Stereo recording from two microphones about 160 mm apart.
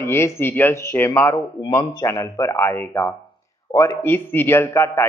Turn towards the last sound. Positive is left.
turn(degrees=15)  # may be behind; listen again after turning